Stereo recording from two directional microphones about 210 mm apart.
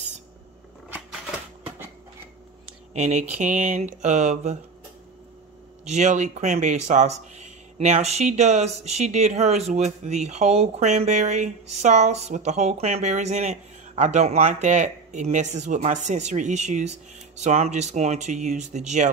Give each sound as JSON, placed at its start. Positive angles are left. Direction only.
{"t": 2.9, "sound": "speech", "side_deg": -30}
{"t": 5.9, "sound": "speech", "side_deg": -35}